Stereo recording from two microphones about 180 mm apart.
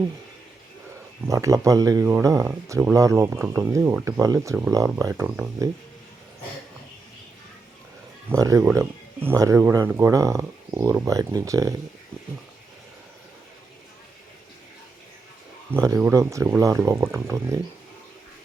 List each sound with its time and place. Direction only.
1.3 s speech: 15° right (ahead or behind)
8.3 s speech: 20° right (ahead or behind)
15.7 s speech: 15° right (ahead or behind)